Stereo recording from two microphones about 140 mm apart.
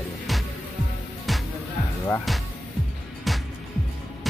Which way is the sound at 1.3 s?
Centre (ahead or behind).